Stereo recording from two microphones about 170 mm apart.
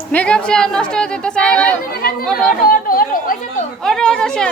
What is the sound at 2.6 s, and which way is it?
Speech, 60° left (ahead or behind).